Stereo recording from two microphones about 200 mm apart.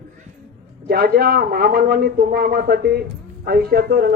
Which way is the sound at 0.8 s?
50° right (ahead or behind).